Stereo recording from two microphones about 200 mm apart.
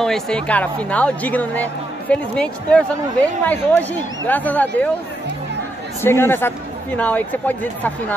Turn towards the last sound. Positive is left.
turn(degrees=10)  # may be behind; listen again after turning